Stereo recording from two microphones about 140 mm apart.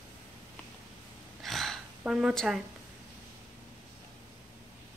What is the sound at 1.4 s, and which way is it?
Gasp, centre (ahead or behind).